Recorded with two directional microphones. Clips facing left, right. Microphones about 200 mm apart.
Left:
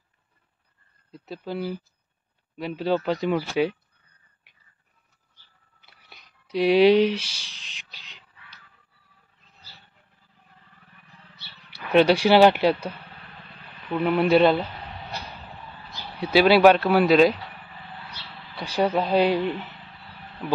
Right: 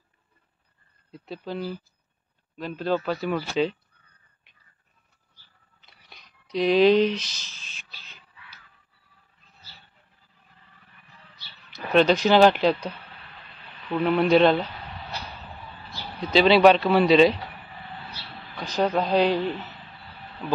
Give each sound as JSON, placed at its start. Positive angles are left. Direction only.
{"t": 1.1, "sound": "speech", "side_deg": 0}
{"t": 4.5, "sound": "a sound", "side_deg": 10}
{"t": 5.8, "sound": "whispering", "side_deg": 10}
{"t": 6.4, "sound": "speech", "side_deg": 10}
{"t": 7.2, "sound": "a sound", "side_deg": 10}
{"t": 11.7, "sound": "speech", "side_deg": 10}
{"t": 15.9, "sound": "speech", "side_deg": 10}
{"t": 18.6, "sound": "speech", "side_deg": 10}